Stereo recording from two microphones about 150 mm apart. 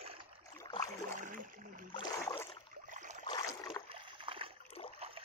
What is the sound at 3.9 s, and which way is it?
Splash, 35° right (ahead or behind).